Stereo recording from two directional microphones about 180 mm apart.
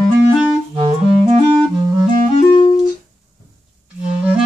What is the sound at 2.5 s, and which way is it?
Music, 30° left (ahead or behind).